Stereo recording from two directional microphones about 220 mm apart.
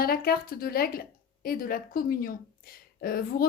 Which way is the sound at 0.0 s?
45° left (ahead or behind).